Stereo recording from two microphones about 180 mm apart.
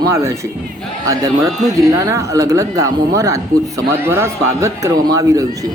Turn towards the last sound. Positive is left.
turn(degrees=-20)  # may be behind; listen again after turning